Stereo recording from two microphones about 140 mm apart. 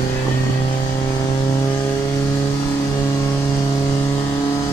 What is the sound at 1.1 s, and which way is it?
Vehicle, 25° left (ahead or behind).